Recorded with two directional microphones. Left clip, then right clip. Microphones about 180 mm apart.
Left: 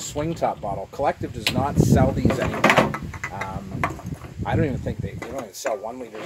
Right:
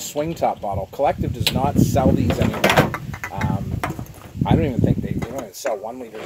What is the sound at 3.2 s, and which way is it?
Music, 10° right (ahead or behind).